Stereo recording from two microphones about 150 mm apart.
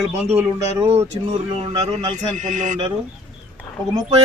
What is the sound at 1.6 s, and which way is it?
Speech, 30° right (ahead or behind).